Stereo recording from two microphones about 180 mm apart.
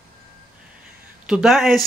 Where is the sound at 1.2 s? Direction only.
5° right (ahead or behind).